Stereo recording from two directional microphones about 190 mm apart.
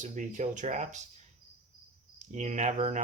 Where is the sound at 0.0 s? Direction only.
40° right (ahead or behind).